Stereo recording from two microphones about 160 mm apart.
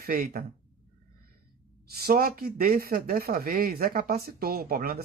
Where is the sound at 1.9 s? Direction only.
75° right (ahead or behind).